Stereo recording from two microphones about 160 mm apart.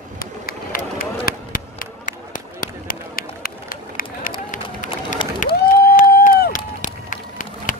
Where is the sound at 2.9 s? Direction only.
65° left (ahead or behind).